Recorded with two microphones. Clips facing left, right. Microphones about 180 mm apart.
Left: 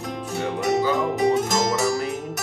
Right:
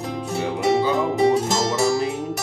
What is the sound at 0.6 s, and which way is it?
Music, 30° right (ahead or behind).